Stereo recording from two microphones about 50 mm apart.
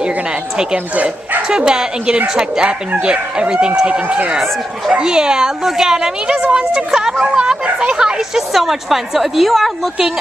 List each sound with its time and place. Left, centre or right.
0.9 s speech: right
1.5 s speech: centre